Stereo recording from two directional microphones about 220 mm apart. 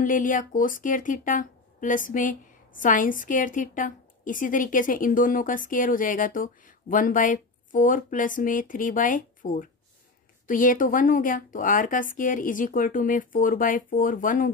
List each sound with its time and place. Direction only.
0.0 s a woman's voice: 35° left (ahead or behind)